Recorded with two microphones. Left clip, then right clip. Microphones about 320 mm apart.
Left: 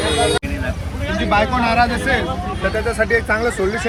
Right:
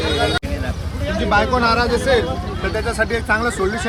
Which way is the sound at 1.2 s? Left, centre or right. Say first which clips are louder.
Even; centre.